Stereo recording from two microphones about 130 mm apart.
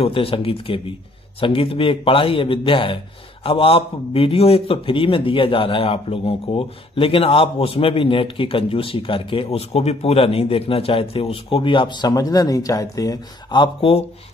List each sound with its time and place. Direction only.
0.0 s a man's voice: 45° left (ahead or behind)